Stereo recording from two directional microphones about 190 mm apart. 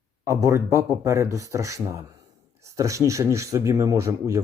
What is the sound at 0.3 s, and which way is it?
Speech, 15° right (ahead or behind).